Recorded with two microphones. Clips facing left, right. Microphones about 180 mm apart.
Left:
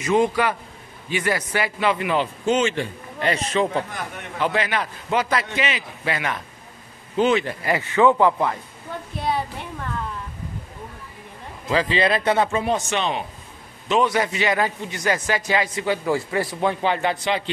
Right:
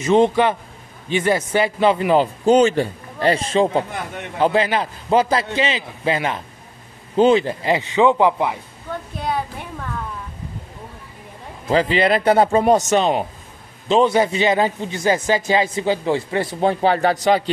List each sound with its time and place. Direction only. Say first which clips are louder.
0.0 s a man's voice: right 4 dB; 25° right (ahead or behind)
11.7 s a man's voice: right 4 dB; 30° right (ahead or behind)
13.8 s a man's voice: right 5 dB; 30° right (ahead or behind)
16.8 s a man's voice: right 6 dB; 40° right (ahead or behind)